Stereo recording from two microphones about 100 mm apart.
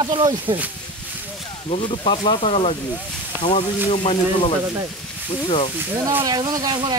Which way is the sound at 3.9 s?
70° left (ahead or behind).